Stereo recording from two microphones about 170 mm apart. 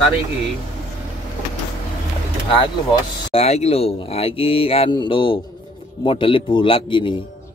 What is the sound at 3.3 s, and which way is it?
Speech, 40° left (ahead or behind).